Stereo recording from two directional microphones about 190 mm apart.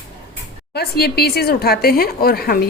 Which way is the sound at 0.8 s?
55° left (ahead or behind).